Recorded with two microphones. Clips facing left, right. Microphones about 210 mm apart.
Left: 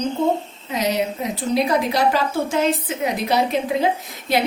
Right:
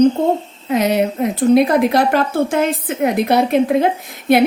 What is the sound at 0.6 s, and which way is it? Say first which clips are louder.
A woman's voice: right 6 dB; 55° right (ahead or behind).